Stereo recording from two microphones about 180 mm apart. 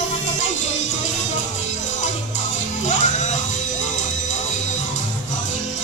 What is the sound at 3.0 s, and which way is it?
Music, 40° left (ahead or behind).